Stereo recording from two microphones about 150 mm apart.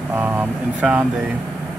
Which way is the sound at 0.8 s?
10° right (ahead or behind).